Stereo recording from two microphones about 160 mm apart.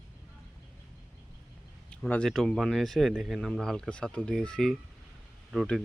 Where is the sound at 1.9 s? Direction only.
5° left (ahead or behind).